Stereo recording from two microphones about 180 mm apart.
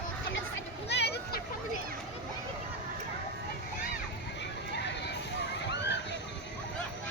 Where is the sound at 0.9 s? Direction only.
70° left (ahead or behind).